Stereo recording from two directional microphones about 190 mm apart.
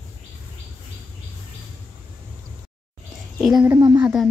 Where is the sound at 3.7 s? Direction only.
20° right (ahead or behind).